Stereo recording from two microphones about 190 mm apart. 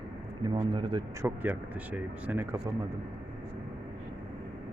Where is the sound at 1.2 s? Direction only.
10° right (ahead or behind).